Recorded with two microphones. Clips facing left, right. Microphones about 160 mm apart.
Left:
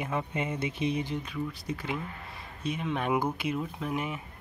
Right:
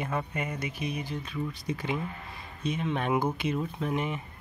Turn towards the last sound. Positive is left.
turn(degrees=5)  # may be behind; listen again after turning